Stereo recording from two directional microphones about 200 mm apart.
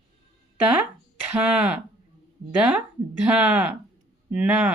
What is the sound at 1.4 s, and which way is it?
Speech, 5° right (ahead or behind).